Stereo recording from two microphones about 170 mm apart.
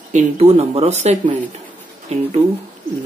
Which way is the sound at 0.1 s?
40° right (ahead or behind).